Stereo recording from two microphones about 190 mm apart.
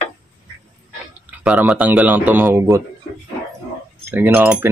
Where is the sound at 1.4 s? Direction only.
5° right (ahead or behind).